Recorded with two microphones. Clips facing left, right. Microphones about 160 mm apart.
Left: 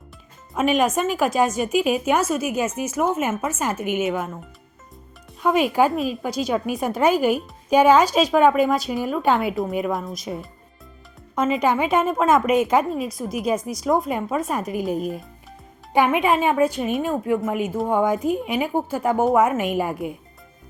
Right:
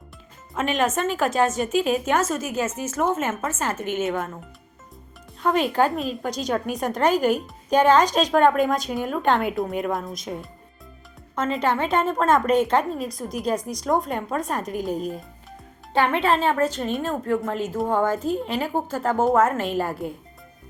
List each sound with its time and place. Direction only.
0.5 s speech: 15° left (ahead or behind)
5.4 s speech: 10° left (ahead or behind)
11.3 s speech: 15° left (ahead or behind)